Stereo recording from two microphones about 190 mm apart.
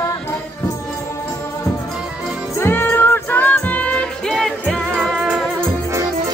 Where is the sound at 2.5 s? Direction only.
10° left (ahead or behind).